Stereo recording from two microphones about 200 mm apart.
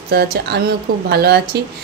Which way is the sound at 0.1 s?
50° right (ahead or behind).